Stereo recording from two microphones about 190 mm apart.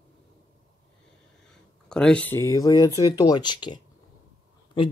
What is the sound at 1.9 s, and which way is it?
Speech, 5° left (ahead or behind).